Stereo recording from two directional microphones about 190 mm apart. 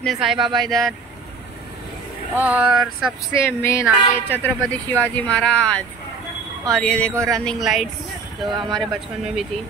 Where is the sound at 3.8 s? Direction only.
5° right (ahead or behind).